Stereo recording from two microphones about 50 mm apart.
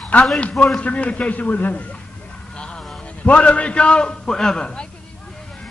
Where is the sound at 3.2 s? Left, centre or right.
Left.